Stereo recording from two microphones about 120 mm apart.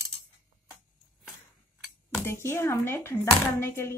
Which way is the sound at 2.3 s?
20° left (ahead or behind).